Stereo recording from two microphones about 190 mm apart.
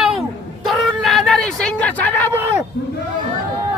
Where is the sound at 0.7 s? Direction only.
Centre (ahead or behind).